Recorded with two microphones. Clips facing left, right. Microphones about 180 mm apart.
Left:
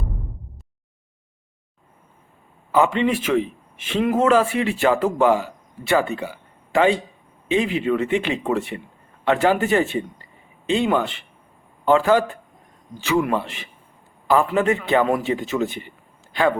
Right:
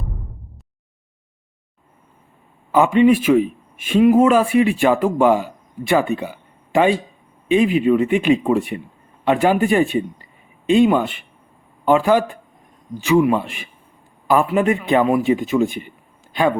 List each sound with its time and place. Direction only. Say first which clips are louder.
2.7 s a man's voice: right 5 dB; 15° right (ahead or behind)